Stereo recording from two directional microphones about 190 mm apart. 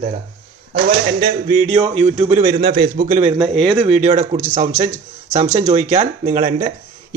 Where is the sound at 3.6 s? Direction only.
25° right (ahead or behind).